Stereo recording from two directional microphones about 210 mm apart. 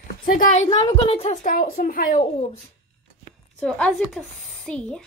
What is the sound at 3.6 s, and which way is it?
Speech, centre (ahead or behind).